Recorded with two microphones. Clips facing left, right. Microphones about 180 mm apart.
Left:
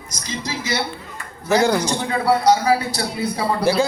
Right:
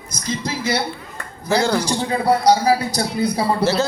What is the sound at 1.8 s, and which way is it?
A man's voice, 35° right (ahead or behind).